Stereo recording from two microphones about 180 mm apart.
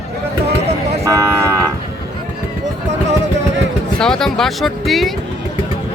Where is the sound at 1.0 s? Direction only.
20° right (ahead or behind).